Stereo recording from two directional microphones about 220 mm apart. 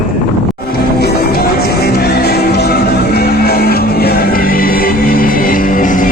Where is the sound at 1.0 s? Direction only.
45° left (ahead or behind).